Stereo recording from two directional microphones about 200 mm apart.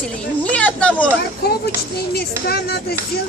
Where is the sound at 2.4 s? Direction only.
50° left (ahead or behind).